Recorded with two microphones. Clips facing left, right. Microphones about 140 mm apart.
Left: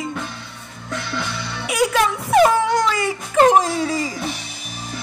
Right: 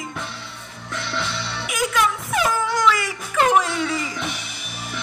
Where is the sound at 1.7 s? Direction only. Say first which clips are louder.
Left 4 dB; 35° left (ahead or behind).